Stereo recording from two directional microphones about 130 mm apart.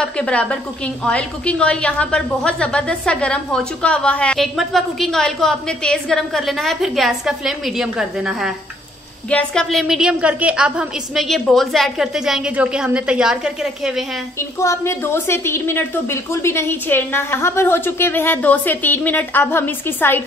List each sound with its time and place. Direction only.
0.0 s a woman's voice: 10° left (ahead or behind)
9.3 s a woman's voice: 10° left (ahead or behind)
14.6 s a woman's voice: 20° left (ahead or behind)